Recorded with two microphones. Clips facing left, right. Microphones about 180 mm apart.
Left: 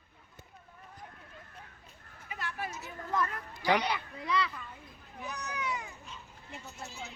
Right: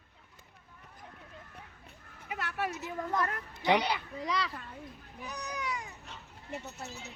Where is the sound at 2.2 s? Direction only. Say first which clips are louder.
Right 4 dB; 70° right (ahead or behind).